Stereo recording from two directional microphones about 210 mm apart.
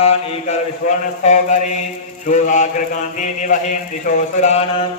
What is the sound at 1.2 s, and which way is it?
Mantra, 35° left (ahead or behind).